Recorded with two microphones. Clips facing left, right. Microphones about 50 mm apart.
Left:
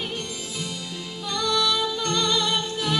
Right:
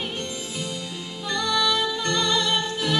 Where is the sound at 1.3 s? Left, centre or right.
Right.